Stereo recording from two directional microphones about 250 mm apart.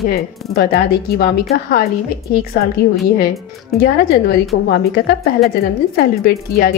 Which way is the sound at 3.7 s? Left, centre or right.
Centre.